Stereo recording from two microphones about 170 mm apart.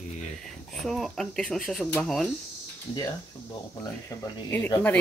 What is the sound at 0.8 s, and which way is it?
Speech, centre (ahead or behind).